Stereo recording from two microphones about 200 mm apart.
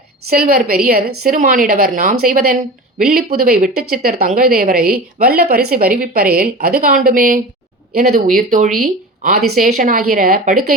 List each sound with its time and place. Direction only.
0.3 s speech: 45° right (ahead or behind)